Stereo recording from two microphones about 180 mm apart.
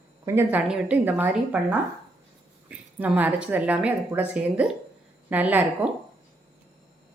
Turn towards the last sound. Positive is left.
turn(degrees=-10)  # may be behind; listen again after turning